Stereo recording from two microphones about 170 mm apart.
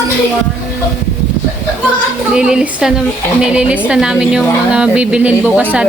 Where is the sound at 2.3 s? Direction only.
5° right (ahead or behind).